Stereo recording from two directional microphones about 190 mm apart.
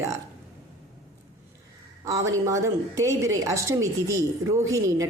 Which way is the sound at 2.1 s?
15° right (ahead or behind).